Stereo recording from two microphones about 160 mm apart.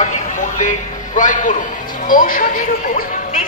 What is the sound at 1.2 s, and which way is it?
A man's voice, 55° left (ahead or behind).